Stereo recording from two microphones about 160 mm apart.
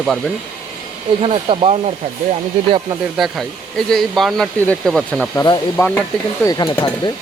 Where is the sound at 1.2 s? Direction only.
35° right (ahead or behind).